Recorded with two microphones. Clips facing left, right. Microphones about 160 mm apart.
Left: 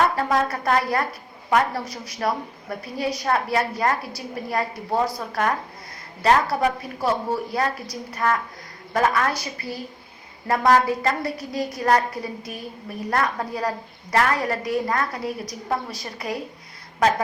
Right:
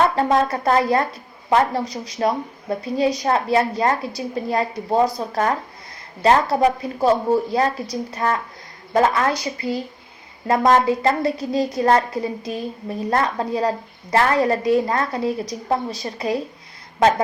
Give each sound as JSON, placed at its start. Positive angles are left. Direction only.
{"t": 0.2, "sound": "a woman's voice", "side_deg": -25}